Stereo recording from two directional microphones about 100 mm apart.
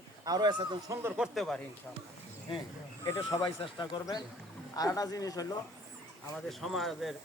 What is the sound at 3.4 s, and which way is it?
Speech, 50° left (ahead or behind).